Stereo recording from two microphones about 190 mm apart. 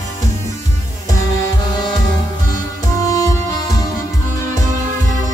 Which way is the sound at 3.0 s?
15° left (ahead or behind).